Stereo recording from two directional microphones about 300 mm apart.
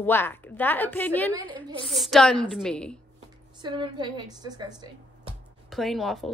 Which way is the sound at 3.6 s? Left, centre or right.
Centre.